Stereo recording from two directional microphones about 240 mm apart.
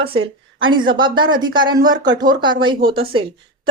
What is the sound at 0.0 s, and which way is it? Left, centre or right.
Speech, right.